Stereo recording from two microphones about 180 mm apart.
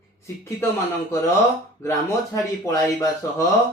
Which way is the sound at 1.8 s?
15° left (ahead or behind).